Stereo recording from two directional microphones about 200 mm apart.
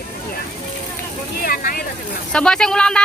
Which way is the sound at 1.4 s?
45° left (ahead or behind).